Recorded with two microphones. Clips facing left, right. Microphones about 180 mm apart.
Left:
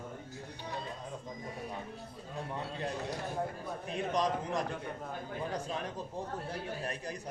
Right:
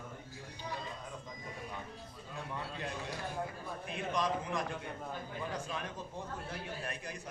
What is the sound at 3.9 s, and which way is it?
Speech, 35° left (ahead or behind).